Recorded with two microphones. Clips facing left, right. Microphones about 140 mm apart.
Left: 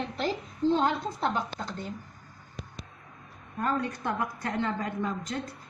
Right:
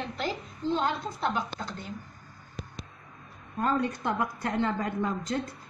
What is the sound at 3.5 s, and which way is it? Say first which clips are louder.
A woman's voice: right 2 dB; 25° right (ahead or behind).